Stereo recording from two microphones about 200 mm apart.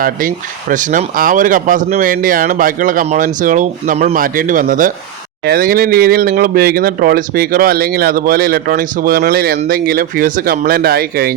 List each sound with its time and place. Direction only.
0.0 s speech: 40° right (ahead or behind)